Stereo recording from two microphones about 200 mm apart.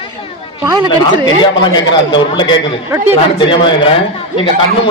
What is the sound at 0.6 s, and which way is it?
Speech, 15° right (ahead or behind).